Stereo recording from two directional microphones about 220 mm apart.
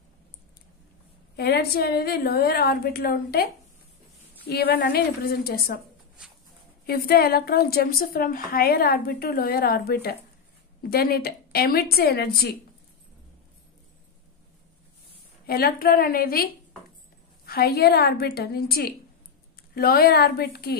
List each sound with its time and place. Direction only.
1.3 s a woman's voice: 45° left (ahead or behind)
4.5 s a woman's voice: 45° left (ahead or behind)
6.9 s a woman's voice: 45° left (ahead or behind)
15.4 s a woman's voice: 45° left (ahead or behind)